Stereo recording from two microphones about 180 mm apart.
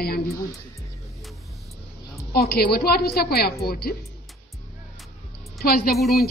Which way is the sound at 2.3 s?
60° left (ahead or behind).